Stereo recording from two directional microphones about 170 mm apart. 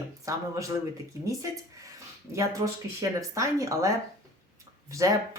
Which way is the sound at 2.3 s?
20° right (ahead or behind).